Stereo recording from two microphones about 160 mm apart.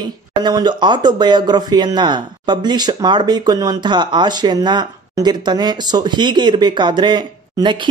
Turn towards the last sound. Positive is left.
turn(degrees=-30)  # may be behind; listen again after turning